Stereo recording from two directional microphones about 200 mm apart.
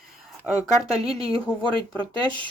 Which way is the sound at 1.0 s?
30° right (ahead or behind).